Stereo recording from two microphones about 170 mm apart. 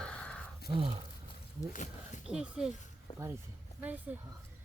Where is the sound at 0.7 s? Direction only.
30° right (ahead or behind).